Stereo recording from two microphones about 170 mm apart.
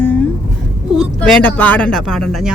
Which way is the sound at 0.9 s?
5° left (ahead or behind).